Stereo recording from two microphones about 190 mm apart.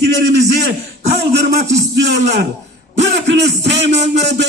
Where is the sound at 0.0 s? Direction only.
65° right (ahead or behind).